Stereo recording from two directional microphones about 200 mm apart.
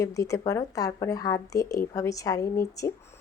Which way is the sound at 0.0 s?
15° left (ahead or behind).